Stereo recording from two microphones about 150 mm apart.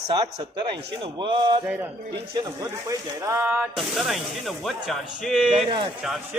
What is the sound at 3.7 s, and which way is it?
Speech, centre (ahead or behind).